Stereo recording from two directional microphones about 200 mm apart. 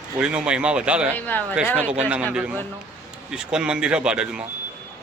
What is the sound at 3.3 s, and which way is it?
Speech, 5° right (ahead or behind).